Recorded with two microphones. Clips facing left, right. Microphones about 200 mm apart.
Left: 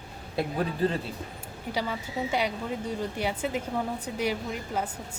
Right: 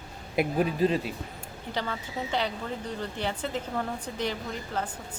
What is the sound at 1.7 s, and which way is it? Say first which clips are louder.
Speech: left 2 dB; 10° left (ahead or behind).